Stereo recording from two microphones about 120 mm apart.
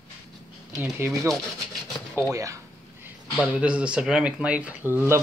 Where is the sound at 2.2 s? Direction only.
25° right (ahead or behind).